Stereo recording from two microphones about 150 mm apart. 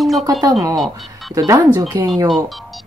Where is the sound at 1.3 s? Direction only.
25° right (ahead or behind).